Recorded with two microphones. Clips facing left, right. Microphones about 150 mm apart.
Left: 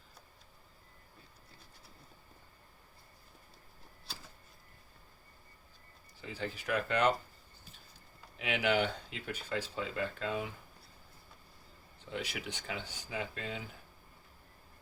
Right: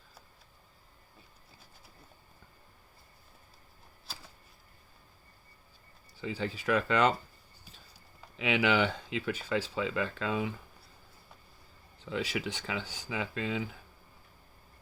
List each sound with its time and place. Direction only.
6.2 s speech: 90° right
8.4 s speech: 90° right
12.2 s speech: 90° right